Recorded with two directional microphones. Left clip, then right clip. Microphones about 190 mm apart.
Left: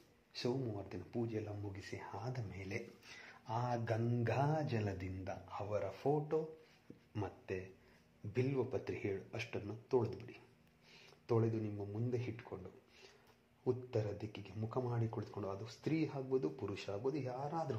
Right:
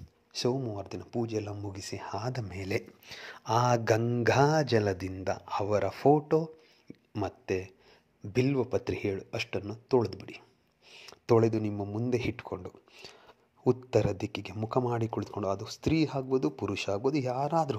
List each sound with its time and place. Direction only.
0.3 s speech: 30° right (ahead or behind)
11.2 s speech: 45° right (ahead or behind)